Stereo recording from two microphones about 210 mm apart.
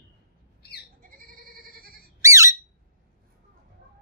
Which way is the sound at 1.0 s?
45° right (ahead or behind).